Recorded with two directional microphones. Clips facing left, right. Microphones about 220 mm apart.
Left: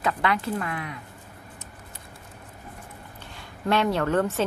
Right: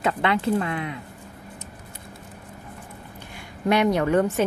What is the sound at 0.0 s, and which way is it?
Speech, 25° right (ahead or behind).